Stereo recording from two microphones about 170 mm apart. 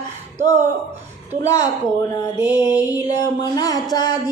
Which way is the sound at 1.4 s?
20° left (ahead or behind).